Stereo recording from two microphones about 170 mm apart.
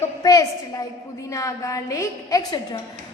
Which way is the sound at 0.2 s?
20° left (ahead or behind).